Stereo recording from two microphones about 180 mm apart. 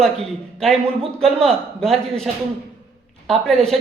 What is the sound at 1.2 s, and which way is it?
A woman's voice, centre (ahead or behind).